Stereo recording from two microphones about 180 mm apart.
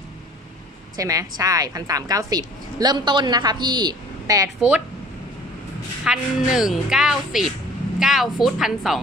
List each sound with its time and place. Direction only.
0.9 s a woman's voice: 20° right (ahead or behind)
4.6 s speech: 5° right (ahead or behind)
6.0 s speech: 5° right (ahead or behind)